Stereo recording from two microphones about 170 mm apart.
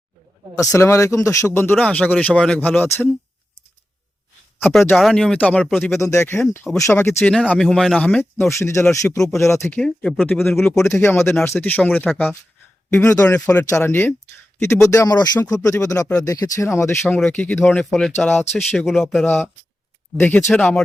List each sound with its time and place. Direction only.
0.7 s speech: 15° left (ahead or behind)
4.9 s speech: centre (ahead or behind)
6.0 s speech: 15° left (ahead or behind)
11.4 s speech: 15° left (ahead or behind)
17.2 s speech: 5° left (ahead or behind)